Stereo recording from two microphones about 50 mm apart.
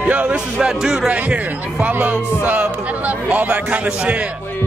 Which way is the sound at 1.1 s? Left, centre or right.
Right.